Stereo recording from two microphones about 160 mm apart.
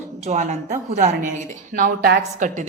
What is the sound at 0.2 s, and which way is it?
Speech, 45° right (ahead or behind).